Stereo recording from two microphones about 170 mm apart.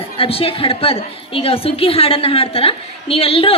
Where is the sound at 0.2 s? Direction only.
35° left (ahead or behind).